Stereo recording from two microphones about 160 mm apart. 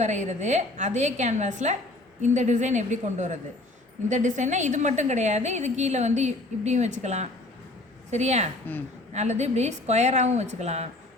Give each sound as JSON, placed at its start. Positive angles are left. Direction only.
{"t": 0.0, "sound": "a woman's voice", "side_deg": -50}
{"t": 8.7, "sound": "speech", "side_deg": 10}
{"t": 9.1, "sound": "a woman's voice", "side_deg": -45}